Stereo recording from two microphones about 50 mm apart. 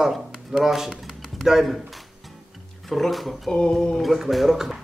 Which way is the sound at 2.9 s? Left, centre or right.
Centre.